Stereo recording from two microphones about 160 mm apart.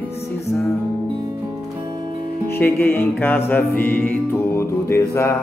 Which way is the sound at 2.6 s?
15° left (ahead or behind).